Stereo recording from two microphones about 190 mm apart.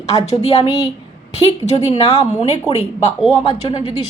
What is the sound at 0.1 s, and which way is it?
Speech, 20° left (ahead or behind).